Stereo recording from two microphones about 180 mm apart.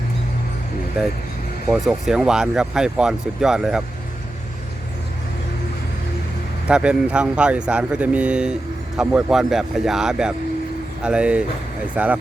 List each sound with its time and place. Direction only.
1.7 s speech: centre (ahead or behind)
6.7 s speech: 5° right (ahead or behind)